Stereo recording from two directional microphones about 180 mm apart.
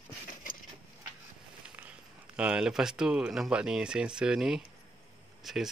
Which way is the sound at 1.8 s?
5° right (ahead or behind).